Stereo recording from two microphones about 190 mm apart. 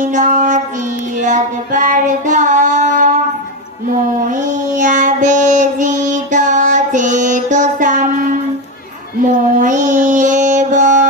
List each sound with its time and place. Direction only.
0.0 s child singing: 40° right (ahead or behind)
4.2 s child singing: 40° right (ahead or behind)
9.6 s music: 40° right (ahead or behind)